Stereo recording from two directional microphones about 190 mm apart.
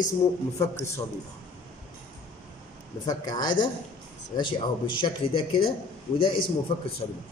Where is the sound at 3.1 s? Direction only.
20° left (ahead or behind).